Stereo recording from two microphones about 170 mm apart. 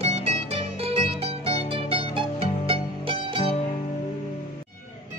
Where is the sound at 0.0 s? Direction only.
35° right (ahead or behind).